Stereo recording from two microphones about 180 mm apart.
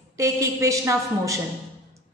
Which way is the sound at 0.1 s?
20° right (ahead or behind).